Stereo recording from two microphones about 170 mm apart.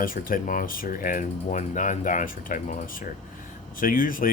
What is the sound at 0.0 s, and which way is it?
Speech, 55° left (ahead or behind).